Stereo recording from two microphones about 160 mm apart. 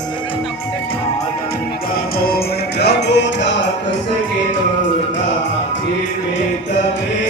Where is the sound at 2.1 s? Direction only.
70° left (ahead or behind); by 3.6 s 90° left.